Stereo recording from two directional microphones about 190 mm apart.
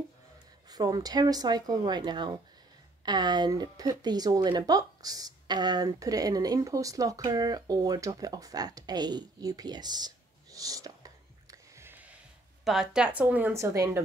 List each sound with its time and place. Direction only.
0.7 s speech: 20° right (ahead or behind)
11.5 s a sound: 15° right (ahead or behind)
12.6 s speech: 5° right (ahead or behind)